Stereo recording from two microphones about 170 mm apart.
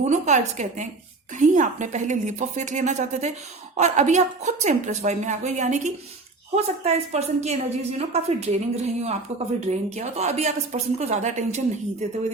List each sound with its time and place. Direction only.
0.0 s a woman's voice: 45° right (ahead or behind)